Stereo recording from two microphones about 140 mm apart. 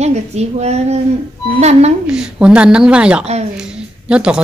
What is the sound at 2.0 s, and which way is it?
A woman's voice, 5° right (ahead or behind).